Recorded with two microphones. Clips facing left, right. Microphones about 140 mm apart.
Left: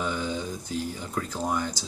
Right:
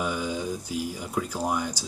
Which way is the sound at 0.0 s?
10° right (ahead or behind).